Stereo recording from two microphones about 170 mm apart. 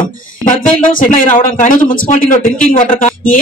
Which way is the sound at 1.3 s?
50° left (ahead or behind).